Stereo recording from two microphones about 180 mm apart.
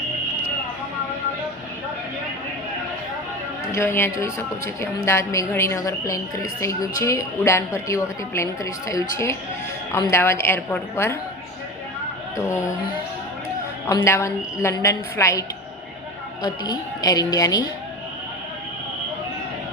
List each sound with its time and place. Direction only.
3.7 s a woman's voice: 15° left (ahead or behind)
12.4 s a woman's voice: 15° left (ahead or behind)
13.8 s a woman's voice: 15° left (ahead or behind)